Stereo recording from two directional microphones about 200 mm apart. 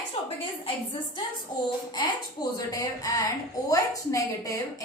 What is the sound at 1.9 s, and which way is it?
A woman's voice, 20° left (ahead or behind).